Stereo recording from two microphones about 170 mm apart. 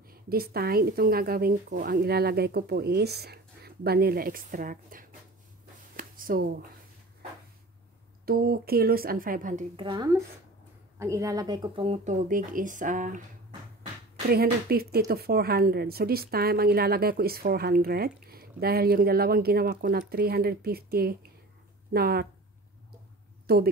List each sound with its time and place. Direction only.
0.0 s speech: 60° right (ahead or behind)
5.9 s a sound: 55° right (ahead or behind)
8.3 s speech: 60° right (ahead or behind)
9.8 s a woman's voice: 25° right (ahead or behind); by 13.2 s 50° right (ahead or behind)
14.3 s speech: 65° right (ahead or behind)
23.4 s a woman's voice: 65° right (ahead or behind)